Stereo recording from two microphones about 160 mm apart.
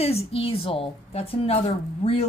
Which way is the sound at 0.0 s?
40° left (ahead or behind).